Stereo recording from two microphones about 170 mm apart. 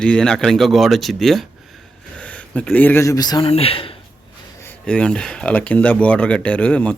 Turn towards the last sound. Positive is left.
turn(degrees=10)  # may be behind; listen again after turning